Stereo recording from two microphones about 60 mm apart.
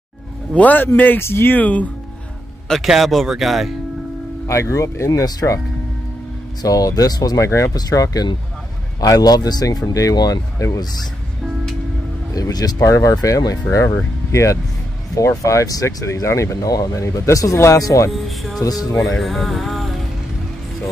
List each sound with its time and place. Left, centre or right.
0.6 s speech: left
1.6 s speech: left
2.8 s speech: centre
4.5 s speech: left
5.2 s speech: left
6.6 s speech: left
7.4 s speech: left
7.7 s speech: left
12.4 s speech: left
13.9 s speech: left
16.1 s speech: left
17.0 s speech: left
18.6 s speech: left
19.0 s speech: centre